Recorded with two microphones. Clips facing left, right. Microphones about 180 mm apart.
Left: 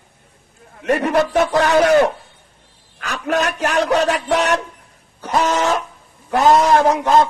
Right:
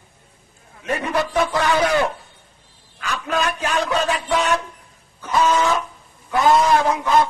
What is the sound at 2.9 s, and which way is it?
Speech, 50° left (ahead or behind).